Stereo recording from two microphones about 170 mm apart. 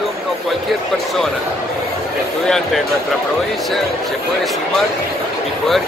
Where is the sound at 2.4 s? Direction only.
5° left (ahead or behind).